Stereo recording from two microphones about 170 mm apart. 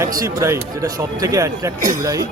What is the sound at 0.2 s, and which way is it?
A man's voice, 20° right (ahead or behind).